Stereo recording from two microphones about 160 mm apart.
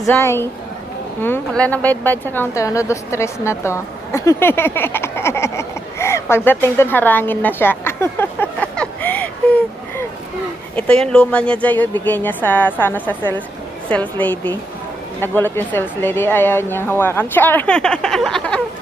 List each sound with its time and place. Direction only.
0.0 s a woman's voice: 15° left (ahead or behind)
10.8 s speech: 5° left (ahead or behind)